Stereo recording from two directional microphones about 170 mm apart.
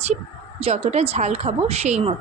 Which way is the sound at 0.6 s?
40° right (ahead or behind).